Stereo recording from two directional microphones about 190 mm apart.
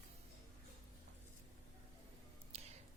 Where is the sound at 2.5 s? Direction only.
35° right (ahead or behind).